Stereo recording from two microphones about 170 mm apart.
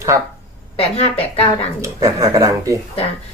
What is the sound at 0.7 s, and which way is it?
Speech, 35° left (ahead or behind).